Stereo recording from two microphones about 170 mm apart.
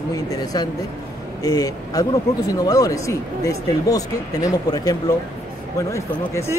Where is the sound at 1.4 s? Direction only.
20° left (ahead or behind).